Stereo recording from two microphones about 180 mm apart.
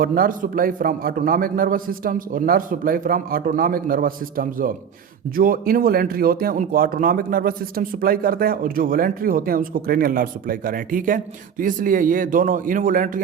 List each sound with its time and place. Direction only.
0.0 s speech: 55° right (ahead or behind)